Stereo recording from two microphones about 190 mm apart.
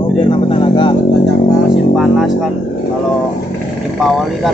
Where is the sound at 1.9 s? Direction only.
Centre (ahead or behind).